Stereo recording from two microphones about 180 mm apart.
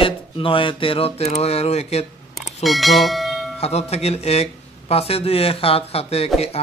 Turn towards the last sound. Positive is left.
turn(degrees=35)  # may be behind; listen again after turning